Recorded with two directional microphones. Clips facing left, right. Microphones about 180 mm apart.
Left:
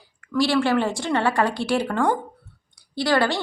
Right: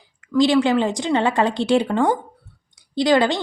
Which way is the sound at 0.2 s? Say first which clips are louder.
Right 4 dB; 20° right (ahead or behind).